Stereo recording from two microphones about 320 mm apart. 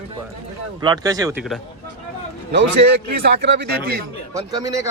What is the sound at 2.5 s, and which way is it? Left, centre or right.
A man's voice, right.